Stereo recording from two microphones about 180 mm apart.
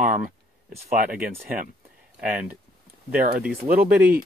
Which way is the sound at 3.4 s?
5° right (ahead or behind).